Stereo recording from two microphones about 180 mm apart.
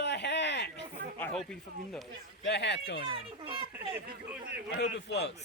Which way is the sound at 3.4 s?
30° right (ahead or behind).